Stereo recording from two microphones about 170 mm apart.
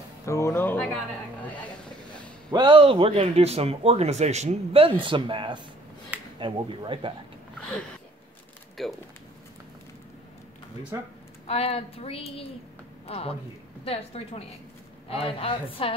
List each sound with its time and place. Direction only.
0.2 s speech: 15° left (ahead or behind)
2.5 s speech: 25° right (ahead or behind)
8.8 s speech: centre (ahead or behind)
10.9 s speech: 20° right (ahead or behind)
11.4 s a woman's voice: 35° left (ahead or behind)